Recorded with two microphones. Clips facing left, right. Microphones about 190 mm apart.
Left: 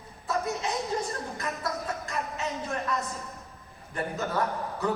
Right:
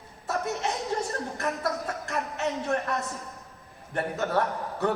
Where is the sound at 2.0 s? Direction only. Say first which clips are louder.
Right 3 dB; 70° right (ahead or behind).